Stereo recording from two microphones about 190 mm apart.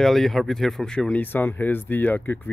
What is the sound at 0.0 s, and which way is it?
Speech, centre (ahead or behind).